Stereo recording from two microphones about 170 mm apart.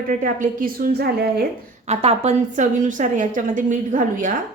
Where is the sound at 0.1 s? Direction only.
50° right (ahead or behind).